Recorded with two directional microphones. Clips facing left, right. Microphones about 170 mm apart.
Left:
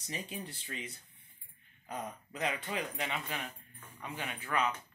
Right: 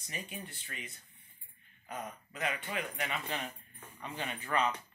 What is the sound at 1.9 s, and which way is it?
Speech, 20° left (ahead or behind).